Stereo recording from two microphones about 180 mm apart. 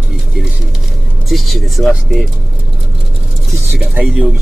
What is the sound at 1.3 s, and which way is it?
Speech, centre (ahead or behind).